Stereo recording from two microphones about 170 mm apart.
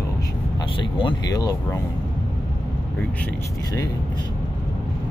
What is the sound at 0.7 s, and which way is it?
Speech, 30° left (ahead or behind).